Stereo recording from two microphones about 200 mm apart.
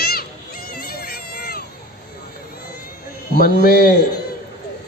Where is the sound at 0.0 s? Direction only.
50° left (ahead or behind).